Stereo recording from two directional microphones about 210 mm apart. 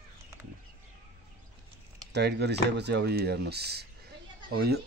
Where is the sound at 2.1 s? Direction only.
55° right (ahead or behind).